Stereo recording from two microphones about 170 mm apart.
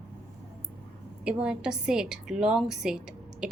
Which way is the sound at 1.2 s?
5° right (ahead or behind).